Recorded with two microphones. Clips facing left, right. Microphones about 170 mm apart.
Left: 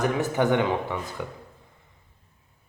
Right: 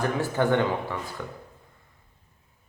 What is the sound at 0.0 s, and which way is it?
Speech, 20° left (ahead or behind).